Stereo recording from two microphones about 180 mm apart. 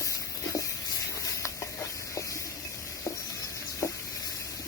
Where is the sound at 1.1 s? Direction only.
15° left (ahead or behind).